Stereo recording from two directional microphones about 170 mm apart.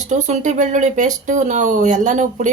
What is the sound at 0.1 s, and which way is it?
Speech, 45° right (ahead or behind).